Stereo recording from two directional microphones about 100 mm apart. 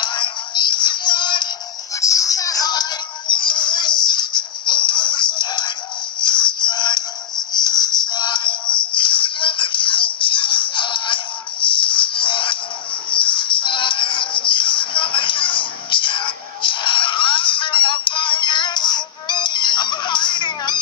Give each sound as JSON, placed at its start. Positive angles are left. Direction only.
{"t": 0.0, "sound": "synthetic singing", "side_deg": 50}
{"t": 2.0, "sound": "music", "side_deg": 35}
{"t": 6.2, "sound": "synthetic singing", "side_deg": 50}
{"t": 7.5, "sound": "music", "side_deg": 45}